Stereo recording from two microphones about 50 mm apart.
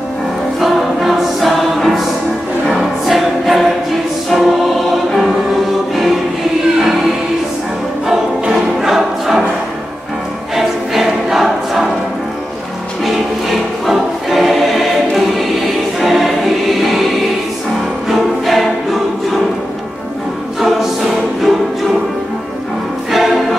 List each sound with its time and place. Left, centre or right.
0.6 s music: centre
2.7 s choir: centre
5.1 s music: centre
8.8 s choir: centre
10.5 s choir: centre
13.0 s choir: centre
18.0 s music: centre
20.6 s choir: centre
23.1 s music: centre